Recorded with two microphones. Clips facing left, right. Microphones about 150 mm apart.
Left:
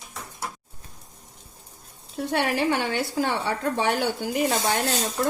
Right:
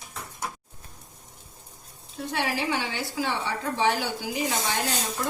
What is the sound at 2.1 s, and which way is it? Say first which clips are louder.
Speech: left 5 dB; 60° left (ahead or behind).